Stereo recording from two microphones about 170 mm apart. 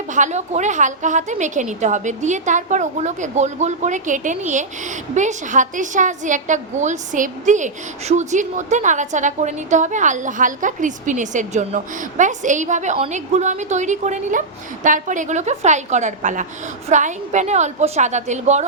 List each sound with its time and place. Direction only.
0.1 s a woman's voice: 45° right (ahead or behind)